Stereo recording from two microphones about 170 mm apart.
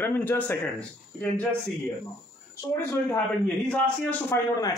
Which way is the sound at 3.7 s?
10° left (ahead or behind).